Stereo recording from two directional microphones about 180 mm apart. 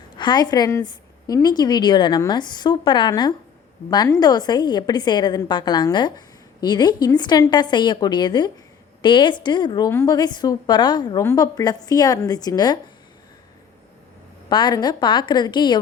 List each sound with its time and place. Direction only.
0.2 s a woman's voice: 25° left (ahead or behind)
14.5 s a woman's voice: 25° left (ahead or behind)